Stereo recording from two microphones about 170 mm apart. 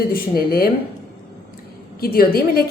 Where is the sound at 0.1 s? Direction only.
60° left (ahead or behind).